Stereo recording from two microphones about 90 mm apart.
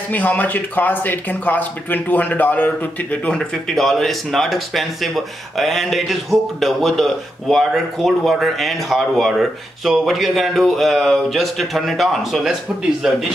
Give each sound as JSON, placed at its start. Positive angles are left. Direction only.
{"t": 0.1, "sound": "speech", "side_deg": 20}
{"t": 3.3, "sound": "speech", "side_deg": 5}